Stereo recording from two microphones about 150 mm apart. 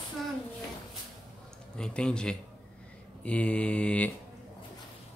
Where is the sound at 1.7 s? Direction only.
5° left (ahead or behind).